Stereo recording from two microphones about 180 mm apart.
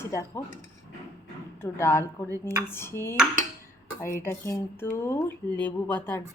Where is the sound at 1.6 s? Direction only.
15° left (ahead or behind).